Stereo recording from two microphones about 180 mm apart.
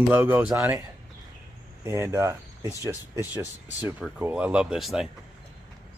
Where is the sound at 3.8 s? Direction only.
5° right (ahead or behind).